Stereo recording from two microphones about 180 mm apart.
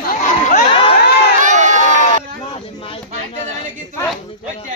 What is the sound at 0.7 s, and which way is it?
Crowd, 30° left (ahead or behind).